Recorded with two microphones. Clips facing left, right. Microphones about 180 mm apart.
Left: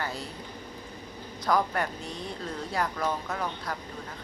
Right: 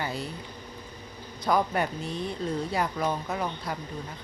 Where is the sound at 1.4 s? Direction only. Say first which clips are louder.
Right 1 dB; 20° right (ahead or behind).